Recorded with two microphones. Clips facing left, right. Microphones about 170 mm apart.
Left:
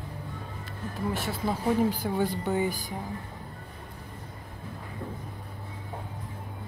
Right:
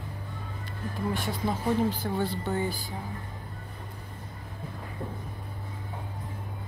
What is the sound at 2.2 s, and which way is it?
Speech, 15° left (ahead or behind).